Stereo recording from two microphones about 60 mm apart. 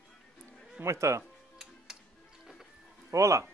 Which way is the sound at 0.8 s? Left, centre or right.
Right.